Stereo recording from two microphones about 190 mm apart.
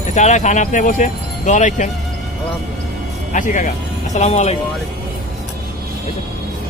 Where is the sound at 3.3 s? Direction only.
40° left (ahead or behind).